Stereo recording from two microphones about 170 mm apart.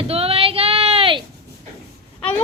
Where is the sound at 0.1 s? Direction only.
35° right (ahead or behind).